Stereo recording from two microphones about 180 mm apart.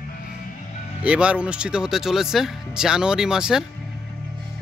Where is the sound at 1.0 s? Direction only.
5° right (ahead or behind).